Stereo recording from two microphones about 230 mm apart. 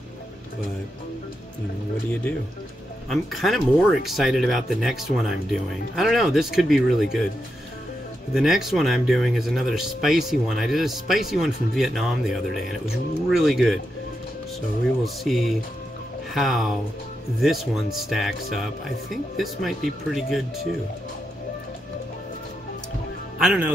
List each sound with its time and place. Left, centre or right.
3.1 s speech: centre
8.3 s speech: centre
15.2 s speech: centre
23.4 s speech: centre